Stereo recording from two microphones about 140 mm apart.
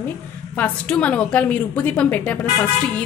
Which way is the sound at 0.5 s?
10° left (ahead or behind).